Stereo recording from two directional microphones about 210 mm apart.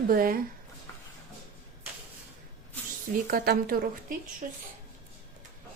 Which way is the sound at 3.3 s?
45° right (ahead or behind).